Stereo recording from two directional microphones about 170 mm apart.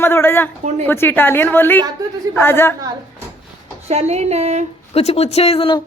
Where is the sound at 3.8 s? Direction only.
40° right (ahead or behind).